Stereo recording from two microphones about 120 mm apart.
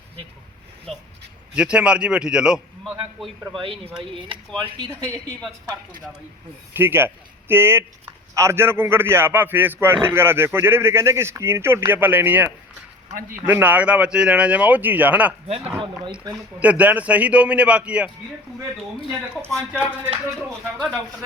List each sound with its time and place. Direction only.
0.9 s speech: 55° right (ahead or behind)
1.5 s speech: 10° right (ahead or behind)
4.6 s speech: 35° right (ahead or behind)
6.7 s speech: 20° right (ahead or behind)
15.4 s speech: 55° right (ahead or behind)
16.6 s speech: 10° right (ahead or behind)
19.5 s speech: 5° left (ahead or behind)